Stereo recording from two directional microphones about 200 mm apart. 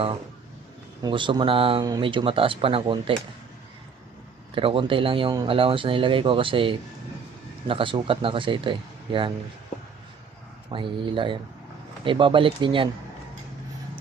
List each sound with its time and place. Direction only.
1.0 s speech: 25° right (ahead or behind)
4.5 s speech: 25° right (ahead or behind)
10.7 s speech: 25° right (ahead or behind)